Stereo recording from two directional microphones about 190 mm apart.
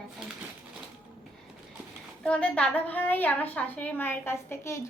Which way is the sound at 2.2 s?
5° left (ahead or behind).